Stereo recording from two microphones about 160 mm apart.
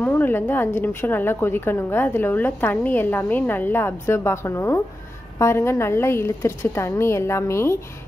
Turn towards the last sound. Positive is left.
turn(degrees=15)  # may be behind; listen again after turning